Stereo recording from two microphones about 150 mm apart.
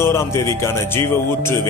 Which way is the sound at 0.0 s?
20° left (ahead or behind).